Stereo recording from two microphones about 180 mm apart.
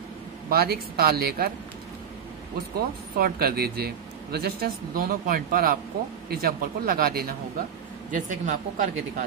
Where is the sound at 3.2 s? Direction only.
60° right (ahead or behind).